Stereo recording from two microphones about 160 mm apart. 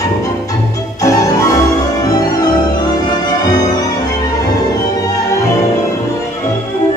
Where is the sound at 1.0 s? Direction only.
20° left (ahead or behind).